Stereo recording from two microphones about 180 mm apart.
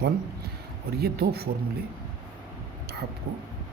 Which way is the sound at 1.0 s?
60° right (ahead or behind).